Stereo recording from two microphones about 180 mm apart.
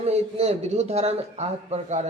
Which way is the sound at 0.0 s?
35° right (ahead or behind).